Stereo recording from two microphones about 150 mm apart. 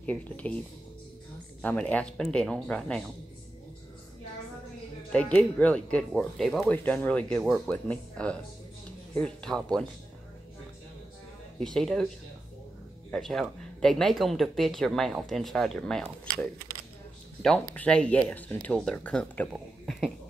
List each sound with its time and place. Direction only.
0.0 s speech: 10° left (ahead or behind)
1.6 s speech: 10° left (ahead or behind)
5.1 s speech: 5° left (ahead or behind)
6.7 s speech: 10° left (ahead or behind)
11.6 s speech: 5° left (ahead or behind)
13.1 s speech: centre (ahead or behind)
17.7 s speech: 5° left (ahead or behind)
19.5 s a sound: centre (ahead or behind)